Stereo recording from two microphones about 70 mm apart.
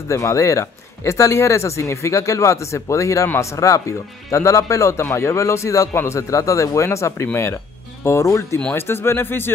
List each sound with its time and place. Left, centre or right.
0.1 s speech: left